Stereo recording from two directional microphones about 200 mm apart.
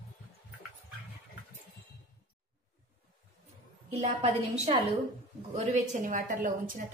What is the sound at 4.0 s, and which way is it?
A woman's voice, 30° right (ahead or behind).